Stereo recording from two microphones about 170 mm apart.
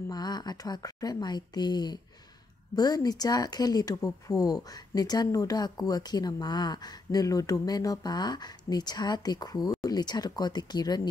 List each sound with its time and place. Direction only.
0.1 s speech: 25° left (ahead or behind)